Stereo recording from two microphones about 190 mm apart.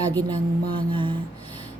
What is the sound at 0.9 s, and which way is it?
Speech, 25° right (ahead or behind).